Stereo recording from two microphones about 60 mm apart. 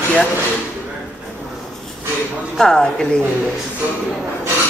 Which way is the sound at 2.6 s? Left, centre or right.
Centre.